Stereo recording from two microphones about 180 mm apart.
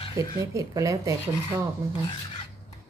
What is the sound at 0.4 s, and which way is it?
Speech, 15° right (ahead or behind).